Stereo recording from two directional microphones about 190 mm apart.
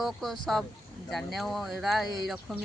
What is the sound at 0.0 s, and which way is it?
Speech, centre (ahead or behind).